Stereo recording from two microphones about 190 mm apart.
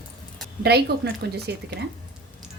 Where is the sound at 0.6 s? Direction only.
60° right (ahead or behind).